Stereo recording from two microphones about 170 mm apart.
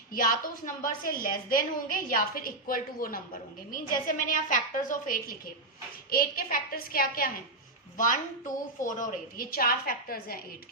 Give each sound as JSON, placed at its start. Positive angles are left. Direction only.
{"t": 0.1, "sound": "a woman's voice", "side_deg": 60}